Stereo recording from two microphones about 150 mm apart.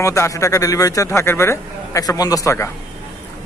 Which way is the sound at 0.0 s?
20° left (ahead or behind).